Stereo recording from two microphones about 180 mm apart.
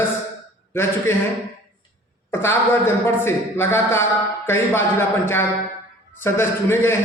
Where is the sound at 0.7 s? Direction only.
15° left (ahead or behind).